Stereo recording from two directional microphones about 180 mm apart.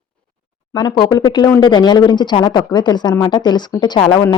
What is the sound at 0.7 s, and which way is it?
A woman's voice, 25° left (ahead or behind).